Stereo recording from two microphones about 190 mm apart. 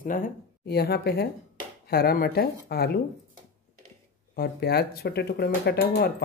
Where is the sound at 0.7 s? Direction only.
55° left (ahead or behind).